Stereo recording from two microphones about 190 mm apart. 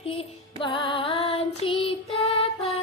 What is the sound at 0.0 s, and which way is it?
Child singing, 30° left (ahead or behind).